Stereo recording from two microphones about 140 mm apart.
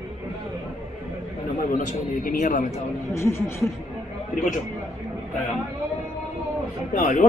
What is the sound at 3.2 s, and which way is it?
Speech, 20° left (ahead or behind).